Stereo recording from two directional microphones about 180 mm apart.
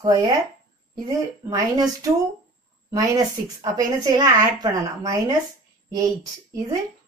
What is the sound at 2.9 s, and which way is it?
A woman's voice, 20° right (ahead or behind).